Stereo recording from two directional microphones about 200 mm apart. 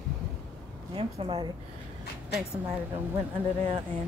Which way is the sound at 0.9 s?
25° right (ahead or behind).